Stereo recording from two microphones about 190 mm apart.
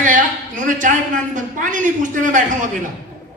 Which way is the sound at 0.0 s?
45° right (ahead or behind).